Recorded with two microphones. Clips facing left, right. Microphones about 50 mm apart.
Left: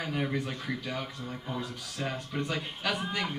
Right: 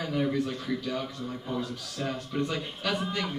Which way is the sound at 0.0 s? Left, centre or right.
Centre.